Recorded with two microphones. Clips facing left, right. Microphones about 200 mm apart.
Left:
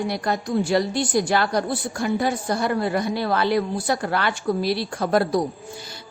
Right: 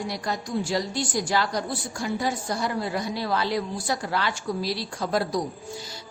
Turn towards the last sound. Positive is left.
turn(degrees=55)  # may be behind; listen again after turning